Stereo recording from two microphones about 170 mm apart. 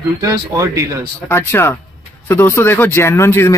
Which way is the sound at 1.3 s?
10° left (ahead or behind).